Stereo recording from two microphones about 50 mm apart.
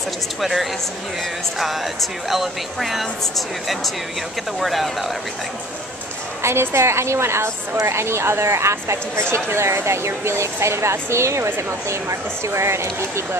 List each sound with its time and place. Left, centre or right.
0.4 s speech: centre
2.2 s speech: centre
6.4 s a woman's voice: right